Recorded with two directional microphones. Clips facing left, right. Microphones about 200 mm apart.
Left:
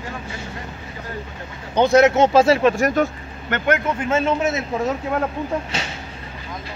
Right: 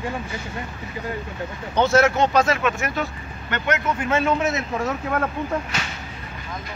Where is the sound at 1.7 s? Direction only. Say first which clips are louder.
Left 4 dB; 15° left (ahead or behind); by 2.9 s 30° left (ahead or behind).